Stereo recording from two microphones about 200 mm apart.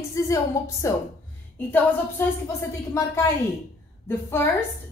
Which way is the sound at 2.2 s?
10° left (ahead or behind).